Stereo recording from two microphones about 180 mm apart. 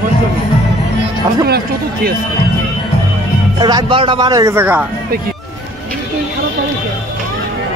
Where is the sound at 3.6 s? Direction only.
25° right (ahead or behind); by 4.8 s 10° right (ahead or behind).